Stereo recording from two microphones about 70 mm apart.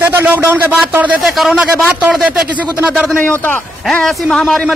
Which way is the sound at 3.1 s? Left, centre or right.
Left.